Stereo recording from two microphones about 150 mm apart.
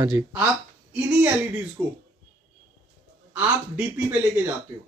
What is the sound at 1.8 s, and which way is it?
Speech, 25° right (ahead or behind).